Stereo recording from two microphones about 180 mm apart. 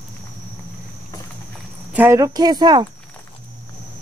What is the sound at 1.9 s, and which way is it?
Speech, 10° right (ahead or behind).